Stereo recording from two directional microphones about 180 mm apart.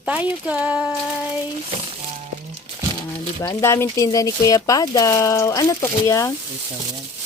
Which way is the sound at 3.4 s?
15° left (ahead or behind).